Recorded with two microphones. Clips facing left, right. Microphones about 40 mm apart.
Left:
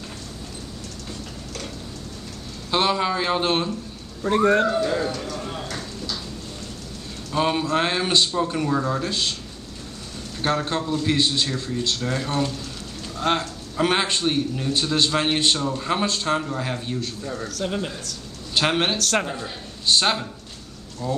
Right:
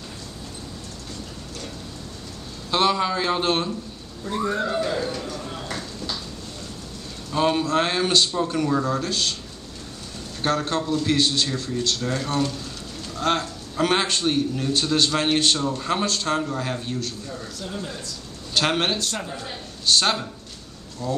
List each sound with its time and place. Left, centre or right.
2.7 s a man's voice: centre
4.2 s speech: left
4.8 s a man's voice: centre
5.4 s a sound: centre
7.3 s a man's voice: centre
10.4 s a man's voice: centre
17.6 s speech: left
18.5 s a man's voice: centre